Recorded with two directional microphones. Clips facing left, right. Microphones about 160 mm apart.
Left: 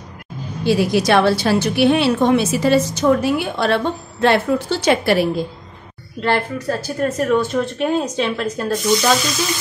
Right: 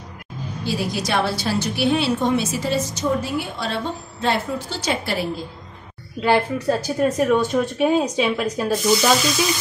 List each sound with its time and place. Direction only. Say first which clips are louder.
0.7 s a woman's voice: left 9 dB; 65° left (ahead or behind)
6.2 s speech: right 1 dB; 10° right (ahead or behind)